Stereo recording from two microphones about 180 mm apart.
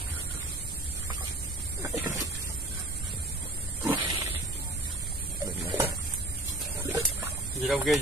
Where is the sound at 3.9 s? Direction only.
20° right (ahead or behind).